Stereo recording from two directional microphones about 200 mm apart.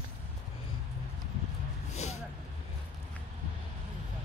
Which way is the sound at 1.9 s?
35° left (ahead or behind).